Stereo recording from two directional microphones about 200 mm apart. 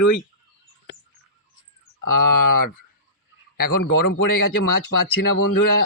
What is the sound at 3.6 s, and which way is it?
Speech, 55° left (ahead or behind).